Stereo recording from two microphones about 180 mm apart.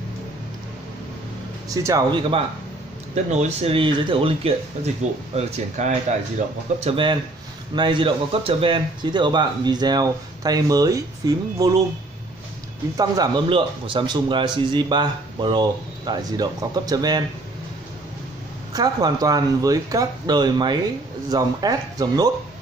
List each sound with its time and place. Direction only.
1.7 s speech: 20° right (ahead or behind)
3.3 s speech: 40° right (ahead or behind)
6.8 s speech: 30° right (ahead or behind)
12.9 s speech: 20° right (ahead or behind)
18.7 s speech: 20° right (ahead or behind)